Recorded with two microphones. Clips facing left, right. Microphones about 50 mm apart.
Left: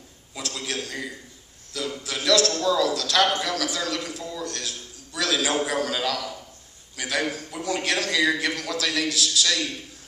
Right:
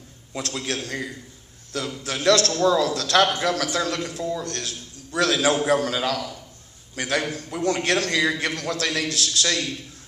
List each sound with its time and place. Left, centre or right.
0.4 s a man's voice: right